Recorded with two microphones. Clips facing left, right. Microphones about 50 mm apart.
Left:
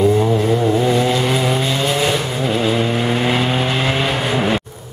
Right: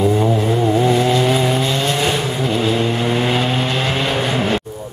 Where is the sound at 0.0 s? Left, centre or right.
Centre.